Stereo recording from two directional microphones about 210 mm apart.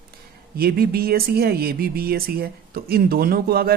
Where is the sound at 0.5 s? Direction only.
45° right (ahead or behind).